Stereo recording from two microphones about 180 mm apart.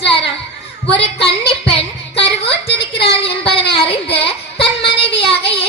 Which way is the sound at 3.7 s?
30° left (ahead or behind).